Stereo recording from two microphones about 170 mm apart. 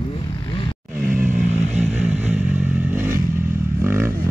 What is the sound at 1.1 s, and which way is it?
Vehicle, 10° right (ahead or behind).